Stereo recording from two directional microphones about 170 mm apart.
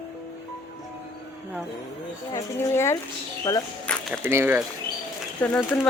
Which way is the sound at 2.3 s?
15° left (ahead or behind).